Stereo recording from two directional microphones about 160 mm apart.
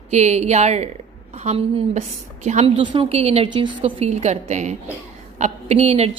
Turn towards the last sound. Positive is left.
turn(degrees=-40)  # may be behind; listen again after turning